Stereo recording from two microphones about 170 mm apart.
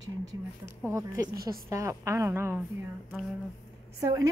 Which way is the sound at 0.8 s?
15° right (ahead or behind).